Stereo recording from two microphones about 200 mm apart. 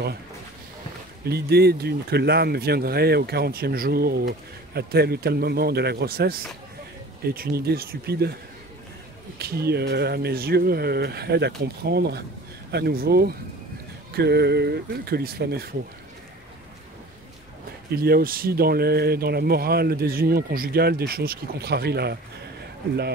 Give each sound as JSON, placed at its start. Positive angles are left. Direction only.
{"t": 1.3, "sound": "speech", "side_deg": -55}
{"t": 9.4, "sound": "speech", "side_deg": -50}
{"t": 17.9, "sound": "speech", "side_deg": -50}